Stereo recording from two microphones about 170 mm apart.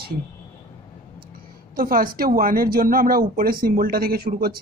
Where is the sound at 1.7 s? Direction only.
55° right (ahead or behind).